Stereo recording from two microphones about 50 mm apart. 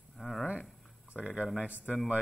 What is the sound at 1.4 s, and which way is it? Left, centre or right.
Speech, right.